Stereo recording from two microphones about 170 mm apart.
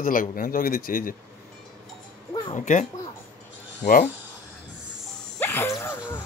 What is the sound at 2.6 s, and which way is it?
Speech, 45° left (ahead or behind).